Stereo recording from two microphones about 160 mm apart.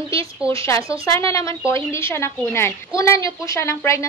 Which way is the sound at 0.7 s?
20° left (ahead or behind).